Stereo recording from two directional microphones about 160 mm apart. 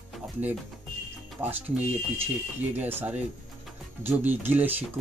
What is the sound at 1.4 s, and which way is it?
Speech, 10° right (ahead or behind).